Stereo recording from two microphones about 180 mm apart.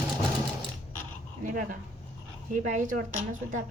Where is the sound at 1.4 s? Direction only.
50° right (ahead or behind).